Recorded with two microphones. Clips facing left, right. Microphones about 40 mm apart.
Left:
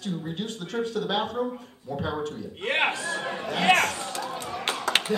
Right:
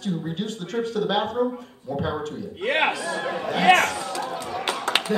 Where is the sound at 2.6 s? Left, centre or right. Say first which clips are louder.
Right 3 dB; right.